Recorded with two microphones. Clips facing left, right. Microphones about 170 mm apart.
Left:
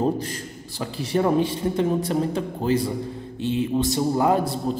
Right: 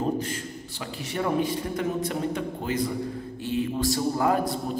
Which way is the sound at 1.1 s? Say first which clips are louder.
Left 5 dB; 30° left (ahead or behind).